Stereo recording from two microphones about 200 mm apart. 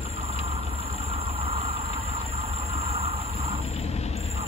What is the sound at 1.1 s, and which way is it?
Vehicle, 30° right (ahead or behind).